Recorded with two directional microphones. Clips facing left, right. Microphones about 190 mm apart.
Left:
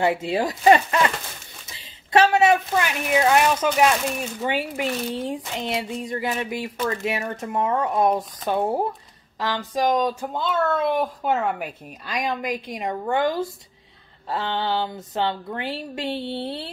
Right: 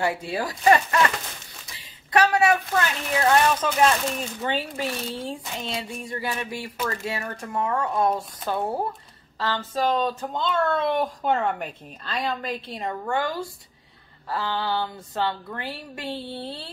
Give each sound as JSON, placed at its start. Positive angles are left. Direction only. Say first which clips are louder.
{"t": 0.0, "sound": "a woman's voice", "louder": "left 5 dB", "side_deg": 20}